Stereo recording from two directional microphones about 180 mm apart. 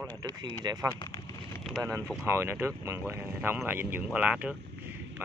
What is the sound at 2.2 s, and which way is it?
Speech, 15° right (ahead or behind).